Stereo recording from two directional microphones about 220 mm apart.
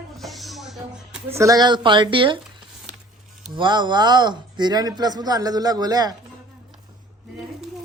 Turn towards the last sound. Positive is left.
turn(degrees=-15)  # may be behind; listen again after turning